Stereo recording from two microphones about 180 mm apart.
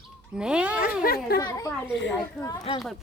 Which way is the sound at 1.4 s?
20° left (ahead or behind).